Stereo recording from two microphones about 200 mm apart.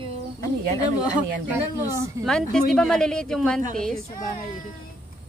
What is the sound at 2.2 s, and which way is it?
Speech, 5° left (ahead or behind).